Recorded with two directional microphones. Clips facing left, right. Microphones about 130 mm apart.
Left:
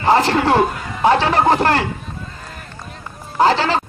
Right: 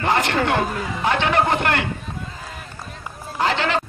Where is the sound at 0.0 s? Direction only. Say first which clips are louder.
Left 5 dB; 35° left (ahead or behind).